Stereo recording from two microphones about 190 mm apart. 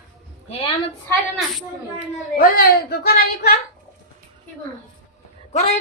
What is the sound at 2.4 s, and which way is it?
A woman's voice, 50° left (ahead or behind).